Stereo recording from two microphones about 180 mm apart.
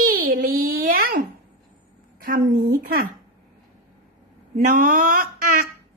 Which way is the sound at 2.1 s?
55° right (ahead or behind).